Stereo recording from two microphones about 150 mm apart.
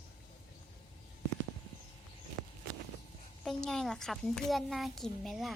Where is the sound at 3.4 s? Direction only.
5° left (ahead or behind).